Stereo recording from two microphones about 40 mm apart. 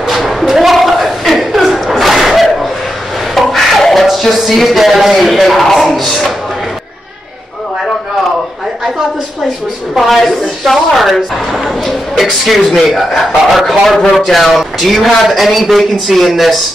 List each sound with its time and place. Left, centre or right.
0.1 s a sound: centre
5.1 s speech: centre
9.9 s a man's voice: centre